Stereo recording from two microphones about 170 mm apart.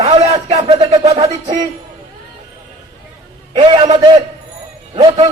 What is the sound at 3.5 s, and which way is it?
Speech, 30° right (ahead or behind).